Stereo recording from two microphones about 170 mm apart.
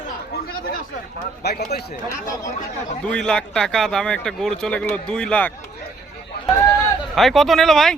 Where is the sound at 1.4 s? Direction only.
70° left (ahead or behind).